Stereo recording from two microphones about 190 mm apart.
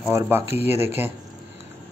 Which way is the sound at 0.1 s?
15° right (ahead or behind).